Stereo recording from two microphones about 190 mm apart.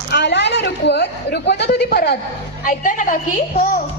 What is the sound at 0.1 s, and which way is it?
A woman's voice, 65° left (ahead or behind).